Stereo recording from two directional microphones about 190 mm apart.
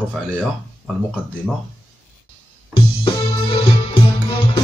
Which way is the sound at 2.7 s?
25° left (ahead or behind).